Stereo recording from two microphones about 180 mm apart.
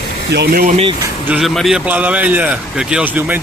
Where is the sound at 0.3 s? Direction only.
65° right (ahead or behind).